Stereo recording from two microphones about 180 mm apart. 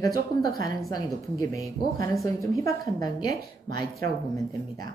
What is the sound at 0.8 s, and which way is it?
A woman's voice, 20° left (ahead or behind).